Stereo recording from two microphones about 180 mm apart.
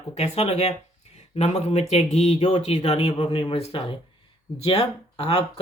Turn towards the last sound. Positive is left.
turn(degrees=30)  # may be behind; listen again after turning